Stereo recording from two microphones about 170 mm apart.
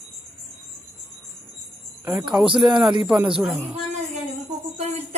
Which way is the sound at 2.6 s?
Centre (ahead or behind).